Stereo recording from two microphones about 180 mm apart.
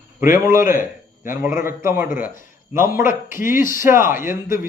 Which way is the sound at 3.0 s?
50° left (ahead or behind).